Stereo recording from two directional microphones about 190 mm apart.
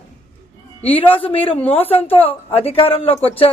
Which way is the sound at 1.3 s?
30° left (ahead or behind).